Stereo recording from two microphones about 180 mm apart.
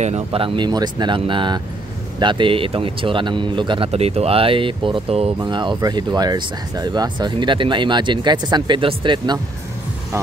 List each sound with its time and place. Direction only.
0.0 s a man's voice: 35° right (ahead or behind)